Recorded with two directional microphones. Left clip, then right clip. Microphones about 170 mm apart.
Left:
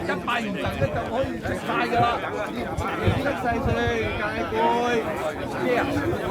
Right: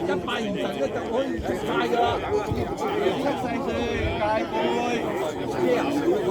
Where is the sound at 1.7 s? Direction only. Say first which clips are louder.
Left 1 dB; 35° left (ahead or behind).